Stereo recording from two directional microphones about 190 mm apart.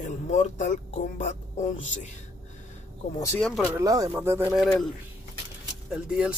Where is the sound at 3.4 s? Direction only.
5° left (ahead or behind).